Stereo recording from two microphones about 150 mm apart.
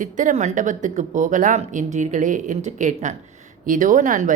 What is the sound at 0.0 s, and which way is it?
A woman's voice, 60° right (ahead or behind).